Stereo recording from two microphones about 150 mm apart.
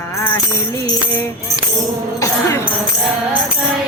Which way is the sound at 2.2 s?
20° left (ahead or behind).